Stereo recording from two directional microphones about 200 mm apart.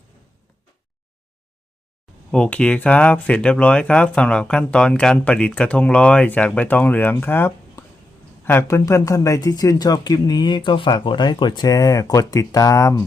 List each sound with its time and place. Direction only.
2.3 s speech: 5° left (ahead or behind)